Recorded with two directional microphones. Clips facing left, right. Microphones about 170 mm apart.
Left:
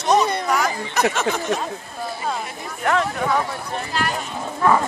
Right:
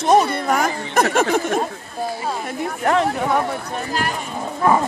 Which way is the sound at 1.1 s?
50° right (ahead or behind).